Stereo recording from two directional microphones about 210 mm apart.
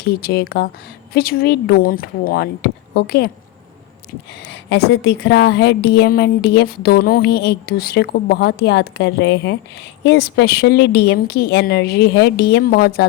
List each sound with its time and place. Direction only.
0.0 s a woman's voice: 50° left (ahead or behind)
4.4 s a woman's voice: 55° left (ahead or behind)